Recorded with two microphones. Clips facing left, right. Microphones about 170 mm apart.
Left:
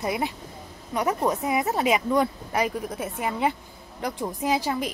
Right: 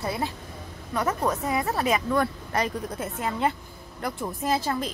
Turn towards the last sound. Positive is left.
turn(degrees=10)  # may be behind; listen again after turning